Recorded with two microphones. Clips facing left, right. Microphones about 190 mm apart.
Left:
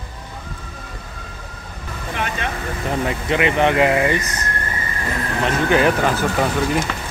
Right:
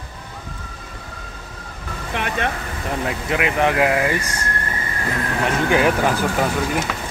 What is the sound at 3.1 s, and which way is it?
Speech, centre (ahead or behind).